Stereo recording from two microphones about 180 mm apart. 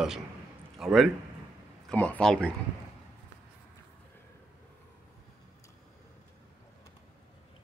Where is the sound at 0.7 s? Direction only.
Centre (ahead or behind).